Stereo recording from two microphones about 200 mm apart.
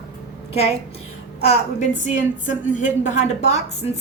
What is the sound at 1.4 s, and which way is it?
A woman's voice, 35° left (ahead or behind).